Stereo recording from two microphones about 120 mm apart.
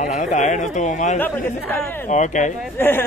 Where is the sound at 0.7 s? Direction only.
85° left.